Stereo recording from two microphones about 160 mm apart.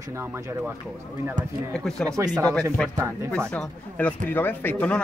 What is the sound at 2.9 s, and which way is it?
Speech, 15° right (ahead or behind).